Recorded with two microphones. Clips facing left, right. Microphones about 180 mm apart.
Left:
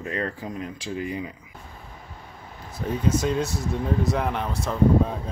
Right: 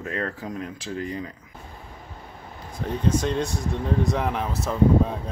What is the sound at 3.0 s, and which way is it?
Speech, 5° left (ahead or behind).